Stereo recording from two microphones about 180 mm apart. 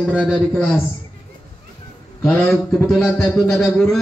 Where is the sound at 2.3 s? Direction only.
5° left (ahead or behind).